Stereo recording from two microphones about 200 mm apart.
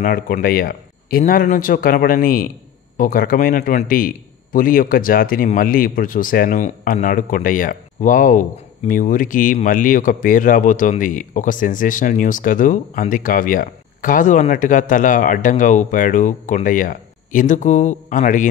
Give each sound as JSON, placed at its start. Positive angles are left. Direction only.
{"t": 0.0, "sound": "a man's voice", "side_deg": 45}